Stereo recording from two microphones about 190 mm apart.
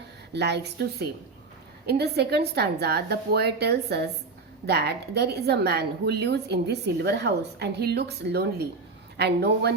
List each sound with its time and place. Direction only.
0.3 s a woman's voice: 60° right (ahead or behind)